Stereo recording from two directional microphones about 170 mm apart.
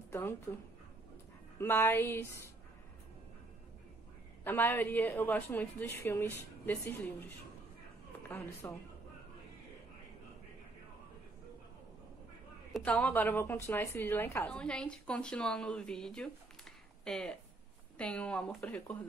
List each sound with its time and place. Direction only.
0.1 s a woman's voice: 15° left (ahead or behind)
1.6 s a woman's voice: 15° left (ahead or behind)
4.5 s a woman's voice: 10° left (ahead or behind)
8.6 s a woman's voice: 15° left (ahead or behind)
12.7 s a woman's voice: 5° left (ahead or behind)